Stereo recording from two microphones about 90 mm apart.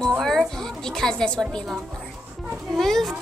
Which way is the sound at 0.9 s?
5° left (ahead or behind).